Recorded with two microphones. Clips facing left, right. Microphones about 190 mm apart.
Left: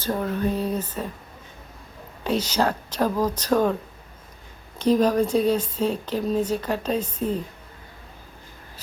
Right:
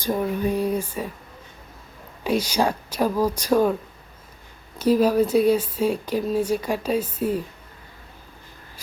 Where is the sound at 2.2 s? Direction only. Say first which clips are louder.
Right 1 dB; 10° right (ahead or behind).